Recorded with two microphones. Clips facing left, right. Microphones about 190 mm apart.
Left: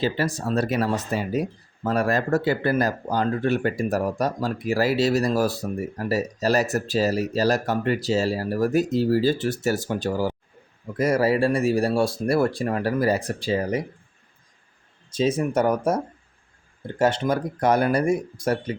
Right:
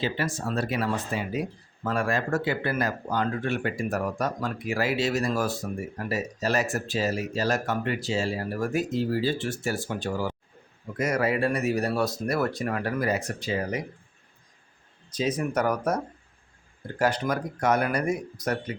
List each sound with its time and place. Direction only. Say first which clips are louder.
0.0 s speech: left 4 dB; 35° left (ahead or behind)
15.1 s speech: left 5 dB; 25° left (ahead or behind)